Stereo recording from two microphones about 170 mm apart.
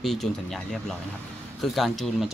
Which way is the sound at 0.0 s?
Centre (ahead or behind).